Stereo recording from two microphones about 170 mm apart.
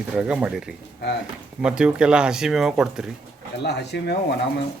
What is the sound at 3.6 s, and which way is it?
Speech, 85° left.